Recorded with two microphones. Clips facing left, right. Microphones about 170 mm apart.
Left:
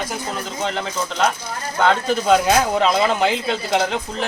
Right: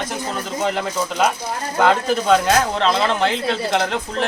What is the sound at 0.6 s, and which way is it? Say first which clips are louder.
Speech: right 3 dB; 5° right (ahead or behind).